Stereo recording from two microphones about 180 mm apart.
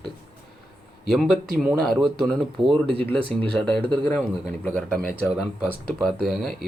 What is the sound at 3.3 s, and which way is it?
Speech, 30° right (ahead or behind).